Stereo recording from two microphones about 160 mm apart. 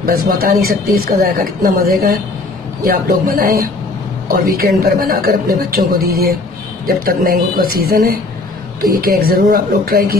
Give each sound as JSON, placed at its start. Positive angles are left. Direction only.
{"t": 0.0, "sound": "speech", "side_deg": -70}
{"t": 7.1, "sound": "speech", "side_deg": -65}